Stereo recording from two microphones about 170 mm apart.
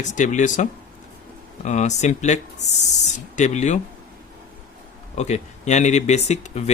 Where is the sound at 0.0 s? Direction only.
45° left (ahead or behind).